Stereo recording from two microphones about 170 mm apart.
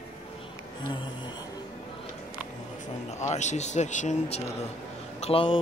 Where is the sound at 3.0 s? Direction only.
40° left (ahead or behind).